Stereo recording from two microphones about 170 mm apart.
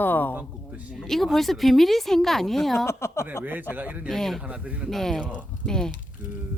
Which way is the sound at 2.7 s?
15° left (ahead or behind).